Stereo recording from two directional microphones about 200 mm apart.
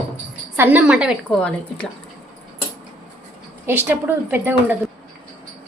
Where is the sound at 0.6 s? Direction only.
5° right (ahead or behind).